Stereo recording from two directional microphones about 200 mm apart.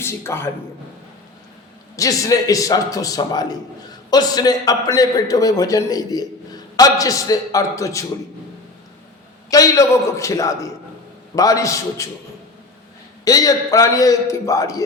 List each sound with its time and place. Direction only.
0.0 s a man's voice: 10° left (ahead or behind)
2.0 s a man's voice: 15° left (ahead or behind)
9.5 s a man's voice: 15° left (ahead or behind)
13.2 s a man's voice: 15° left (ahead or behind)